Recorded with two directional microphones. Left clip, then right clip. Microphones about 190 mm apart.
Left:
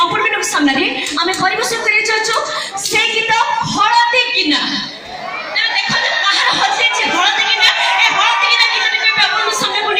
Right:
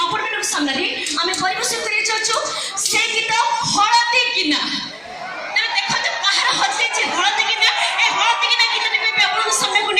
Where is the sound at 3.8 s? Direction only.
45° left (ahead or behind).